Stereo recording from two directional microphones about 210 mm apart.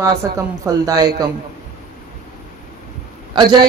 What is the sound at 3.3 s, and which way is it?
Speech, 20° right (ahead or behind).